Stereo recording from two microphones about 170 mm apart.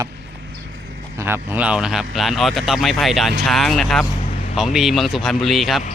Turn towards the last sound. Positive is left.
turn(degrees=0)  # may be behind; listen again after turning